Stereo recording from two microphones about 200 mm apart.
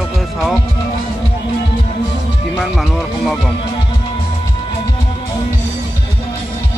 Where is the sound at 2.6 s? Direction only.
Centre (ahead or behind).